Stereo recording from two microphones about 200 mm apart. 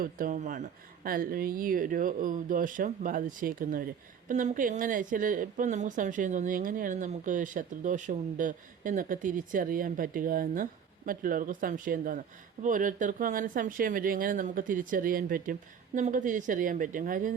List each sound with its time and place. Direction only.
0.0 s a woman's voice: 45° right (ahead or behind)